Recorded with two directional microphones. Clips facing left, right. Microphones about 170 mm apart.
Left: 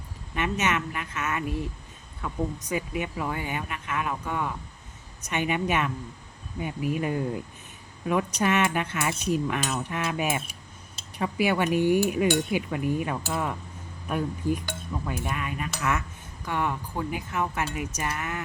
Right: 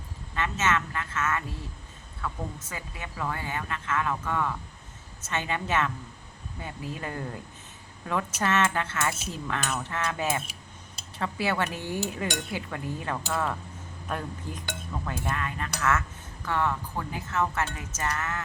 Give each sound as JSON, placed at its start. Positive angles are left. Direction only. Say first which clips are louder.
{"t": 0.3, "sound": "speech", "louder": "left 1 dB", "side_deg": 15}